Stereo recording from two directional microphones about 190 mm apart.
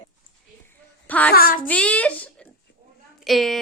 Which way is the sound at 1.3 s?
50° left (ahead or behind).